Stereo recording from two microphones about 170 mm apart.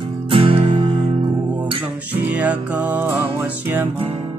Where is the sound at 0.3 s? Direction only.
30° right (ahead or behind).